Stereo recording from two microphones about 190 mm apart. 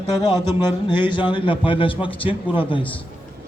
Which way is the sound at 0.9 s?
25° left (ahead or behind).